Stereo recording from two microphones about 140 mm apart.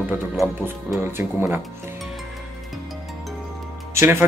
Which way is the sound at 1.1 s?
15° right (ahead or behind).